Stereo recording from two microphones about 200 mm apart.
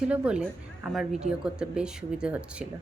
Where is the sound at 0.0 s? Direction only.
5° right (ahead or behind).